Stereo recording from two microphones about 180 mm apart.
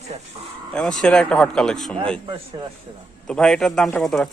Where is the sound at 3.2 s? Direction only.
5° left (ahead or behind).